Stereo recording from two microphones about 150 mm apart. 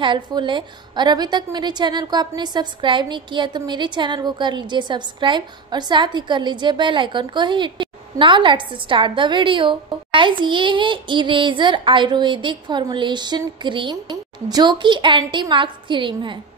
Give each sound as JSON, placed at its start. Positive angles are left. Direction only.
{"t": 0.0, "sound": "a woman's voice", "side_deg": -30}